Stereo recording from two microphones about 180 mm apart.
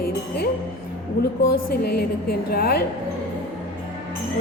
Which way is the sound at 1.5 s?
60° left (ahead or behind).